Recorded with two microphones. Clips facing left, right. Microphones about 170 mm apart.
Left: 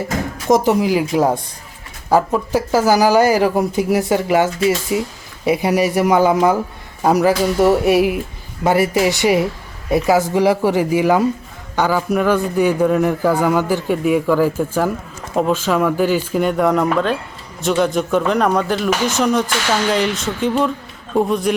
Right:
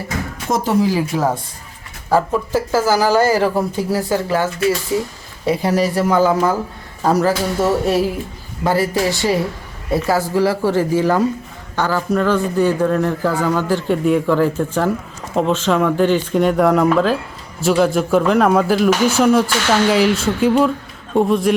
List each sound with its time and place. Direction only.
0.5 s a man's voice: 15° left (ahead or behind); by 21.5 s centre (ahead or behind)